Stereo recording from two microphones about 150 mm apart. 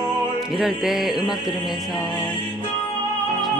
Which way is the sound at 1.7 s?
30° left (ahead or behind).